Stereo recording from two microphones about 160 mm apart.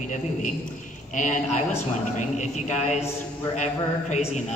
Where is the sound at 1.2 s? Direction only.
50° left (ahead or behind).